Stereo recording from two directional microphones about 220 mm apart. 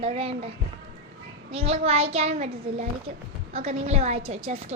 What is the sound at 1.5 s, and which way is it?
A child's voice, 25° right (ahead or behind).